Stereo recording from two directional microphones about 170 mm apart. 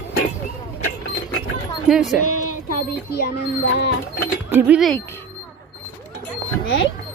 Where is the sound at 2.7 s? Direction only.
70° left (ahead or behind).